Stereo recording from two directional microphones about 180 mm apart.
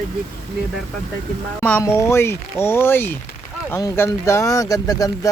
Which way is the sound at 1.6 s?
10° left (ahead or behind).